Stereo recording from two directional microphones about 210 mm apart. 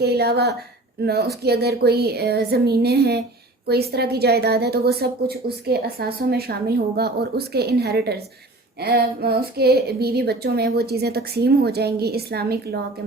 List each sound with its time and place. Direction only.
0.0 s a woman's voice: 50° right (ahead or behind)